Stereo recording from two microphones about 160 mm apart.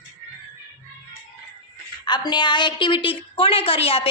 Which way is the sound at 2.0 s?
25° left (ahead or behind).